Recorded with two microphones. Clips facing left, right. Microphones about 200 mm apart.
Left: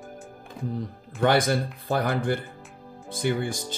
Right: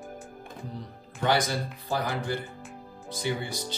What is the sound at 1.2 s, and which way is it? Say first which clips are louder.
Speech: left 5 dB; 55° left (ahead or behind).